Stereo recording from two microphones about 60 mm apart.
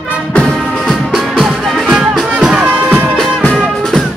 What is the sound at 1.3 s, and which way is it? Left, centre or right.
Music, centre.